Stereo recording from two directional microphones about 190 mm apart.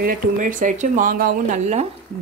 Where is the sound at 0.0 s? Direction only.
45° right (ahead or behind).